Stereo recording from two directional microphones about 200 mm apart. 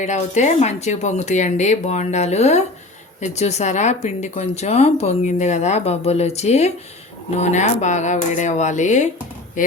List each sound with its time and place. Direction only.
0.0 s speech: 35° left (ahead or behind)